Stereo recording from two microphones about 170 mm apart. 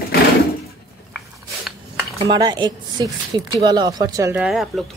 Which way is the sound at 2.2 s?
25° right (ahead or behind).